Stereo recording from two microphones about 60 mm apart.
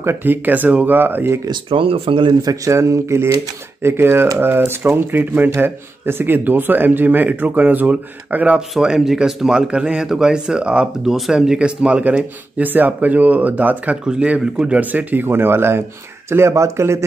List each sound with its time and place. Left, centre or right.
0.0 s speech: right
2.4 s a man's voice: right
3.8 s speech: right
8.5 s a man's voice: centre
11.1 s a man's voice: centre
14.7 s speech: right